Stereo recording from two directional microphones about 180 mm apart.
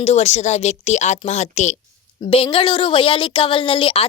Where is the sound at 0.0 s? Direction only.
35° left (ahead or behind).